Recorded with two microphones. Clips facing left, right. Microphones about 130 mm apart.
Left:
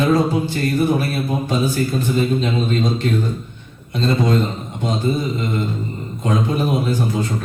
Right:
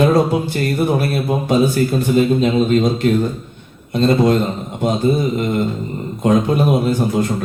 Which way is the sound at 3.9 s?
55° right (ahead or behind).